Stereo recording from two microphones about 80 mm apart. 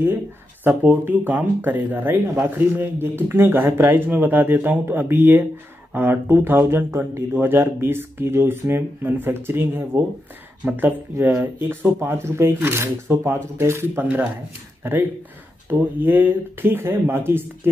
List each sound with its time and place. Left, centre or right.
0.7 s speech: right